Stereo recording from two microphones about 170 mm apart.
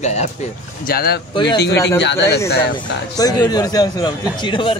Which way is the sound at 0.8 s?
65° left (ahead or behind).